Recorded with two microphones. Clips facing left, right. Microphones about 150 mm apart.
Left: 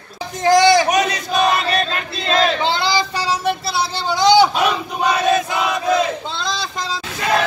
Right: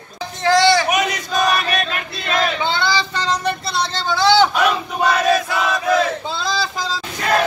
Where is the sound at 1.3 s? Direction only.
25° left (ahead or behind).